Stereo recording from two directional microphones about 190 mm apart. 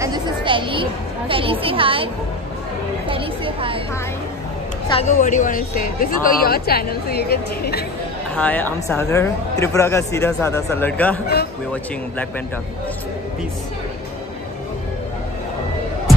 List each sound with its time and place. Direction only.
0.0 s a sound: 25° right (ahead or behind)
1.3 s a woman's voice: 30° right (ahead or behind)
3.1 s a woman's voice: 30° right (ahead or behind)
5.0 s speech: 40° left (ahead or behind); by 7.8 s 55° left (ahead or behind)
8.4 s speech: 10° left (ahead or behind)